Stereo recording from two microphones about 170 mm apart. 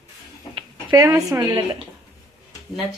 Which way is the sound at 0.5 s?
20° right (ahead or behind).